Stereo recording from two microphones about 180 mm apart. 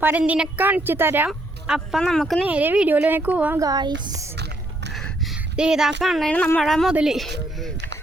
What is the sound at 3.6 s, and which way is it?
Speech, 25° right (ahead or behind).